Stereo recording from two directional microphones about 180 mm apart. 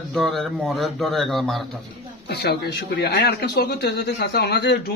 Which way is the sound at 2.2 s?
65° left (ahead or behind).